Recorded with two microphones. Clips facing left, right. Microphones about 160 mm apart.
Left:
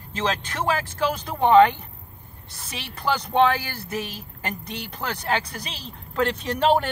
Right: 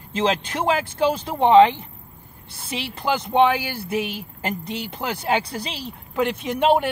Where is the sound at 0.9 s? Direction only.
25° right (ahead or behind).